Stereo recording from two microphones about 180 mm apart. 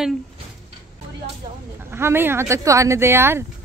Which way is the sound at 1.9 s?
15° right (ahead or behind).